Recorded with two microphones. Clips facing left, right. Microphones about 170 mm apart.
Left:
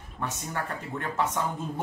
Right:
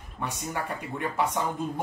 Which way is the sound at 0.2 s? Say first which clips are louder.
Right 1 dB; 10° right (ahead or behind).